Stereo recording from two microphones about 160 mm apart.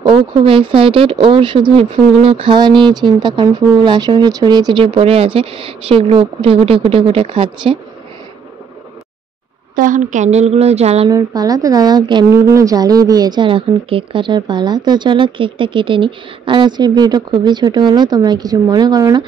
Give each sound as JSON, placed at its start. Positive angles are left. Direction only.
{"t": 0.0, "sound": "speech", "side_deg": -30}
{"t": 9.8, "sound": "speech", "side_deg": -55}
{"t": 11.1, "sound": "a woman's voice", "side_deg": -20}